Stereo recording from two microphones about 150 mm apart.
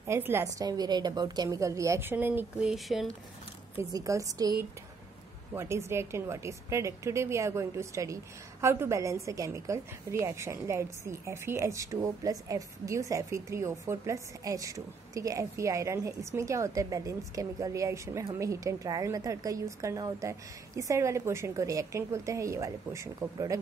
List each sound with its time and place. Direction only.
0.0 s speech: 15° right (ahead or behind)
2.7 s speech: centre (ahead or behind)
3.9 s speech: 20° right (ahead or behind)